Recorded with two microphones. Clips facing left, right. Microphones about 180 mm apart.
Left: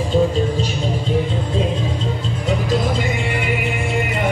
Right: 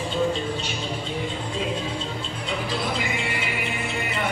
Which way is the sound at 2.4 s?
45° left (ahead or behind).